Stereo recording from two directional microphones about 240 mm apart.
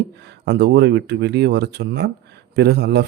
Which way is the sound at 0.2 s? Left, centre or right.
Right.